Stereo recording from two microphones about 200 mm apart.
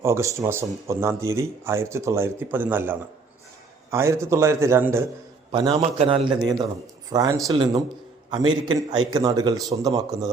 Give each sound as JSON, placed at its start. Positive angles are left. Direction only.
{"t": 0.0, "sound": "speech", "side_deg": -15}
{"t": 5.5, "sound": "speech", "side_deg": -25}